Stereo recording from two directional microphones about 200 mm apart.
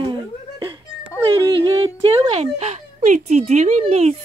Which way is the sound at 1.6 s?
25° right (ahead or behind).